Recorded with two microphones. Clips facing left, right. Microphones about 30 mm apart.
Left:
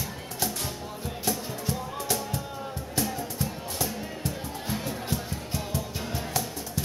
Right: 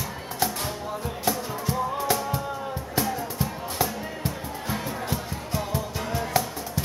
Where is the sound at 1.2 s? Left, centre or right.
Right.